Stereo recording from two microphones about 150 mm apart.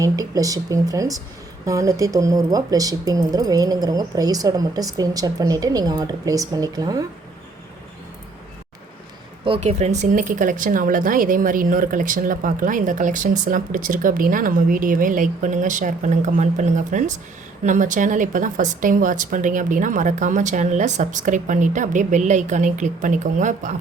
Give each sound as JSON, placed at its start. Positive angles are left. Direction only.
{"t": 0.0, "sound": "speech", "side_deg": -20}
{"t": 9.6, "sound": "speech", "side_deg": -45}